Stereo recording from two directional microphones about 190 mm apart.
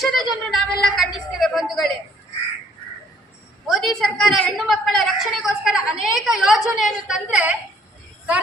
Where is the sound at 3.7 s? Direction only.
Centre (ahead or behind).